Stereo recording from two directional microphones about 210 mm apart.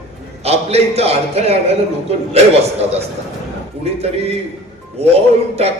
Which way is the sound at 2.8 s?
30° right (ahead or behind).